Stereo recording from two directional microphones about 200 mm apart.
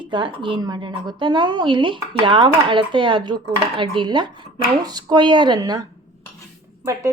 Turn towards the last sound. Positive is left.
turn(degrees=-15)  # may be behind; listen again after turning